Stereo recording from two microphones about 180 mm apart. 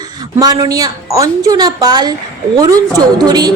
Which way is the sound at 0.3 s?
20° right (ahead or behind).